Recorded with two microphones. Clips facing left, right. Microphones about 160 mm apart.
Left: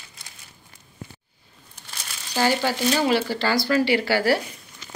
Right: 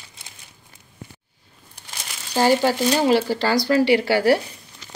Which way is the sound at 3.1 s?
35° right (ahead or behind).